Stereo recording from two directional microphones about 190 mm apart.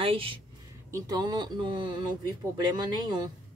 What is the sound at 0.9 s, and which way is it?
Speech, 20° right (ahead or behind).